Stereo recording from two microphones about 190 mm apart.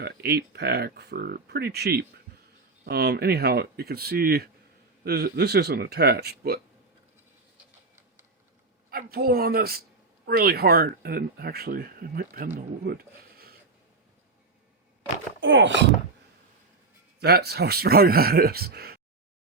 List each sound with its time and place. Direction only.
0.0 s speech: 55° right (ahead or behind)
8.9 s speech: 50° right (ahead or behind)
15.4 s speech: 75° right (ahead or behind)
17.2 s speech: 55° right (ahead or behind)